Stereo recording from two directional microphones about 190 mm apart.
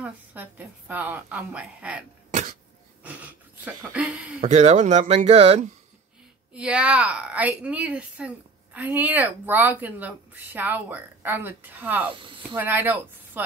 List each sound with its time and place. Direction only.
0.0 s a woman's voice: 10° right (ahead or behind)
3.0 s a sound: 10° right (ahead or behind)
4.4 s speech: 40° right (ahead or behind)
6.5 s a woman's voice: 5° right (ahead or behind)